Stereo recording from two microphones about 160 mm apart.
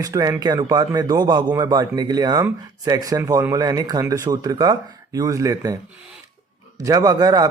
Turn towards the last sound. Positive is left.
turn(degrees=-25)  # may be behind; listen again after turning